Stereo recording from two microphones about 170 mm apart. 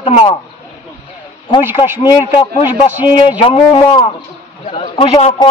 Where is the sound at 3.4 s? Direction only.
30° left (ahead or behind).